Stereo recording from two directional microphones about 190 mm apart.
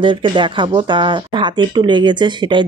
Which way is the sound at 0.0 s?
25° right (ahead or behind).